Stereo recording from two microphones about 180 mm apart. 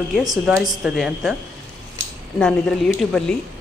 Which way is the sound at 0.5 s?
5° right (ahead or behind).